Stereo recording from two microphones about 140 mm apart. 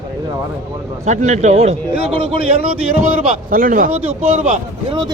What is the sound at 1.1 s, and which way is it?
Speech, 55° right (ahead or behind).